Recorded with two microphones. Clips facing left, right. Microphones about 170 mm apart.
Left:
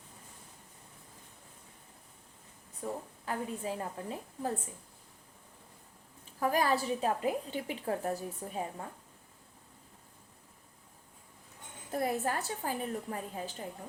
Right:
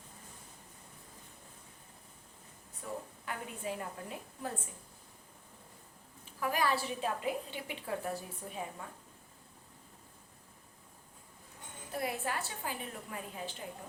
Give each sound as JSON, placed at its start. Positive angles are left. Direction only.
{"t": 2.8, "sound": "a woman's voice", "side_deg": 35}
{"t": 6.4, "sound": "a woman's voice", "side_deg": 40}
{"t": 11.9, "sound": "a woman's voice", "side_deg": 45}